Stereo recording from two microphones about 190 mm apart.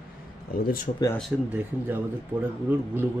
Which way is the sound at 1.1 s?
Centre (ahead or behind).